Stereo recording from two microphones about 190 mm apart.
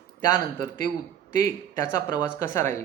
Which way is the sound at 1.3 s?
15° left (ahead or behind).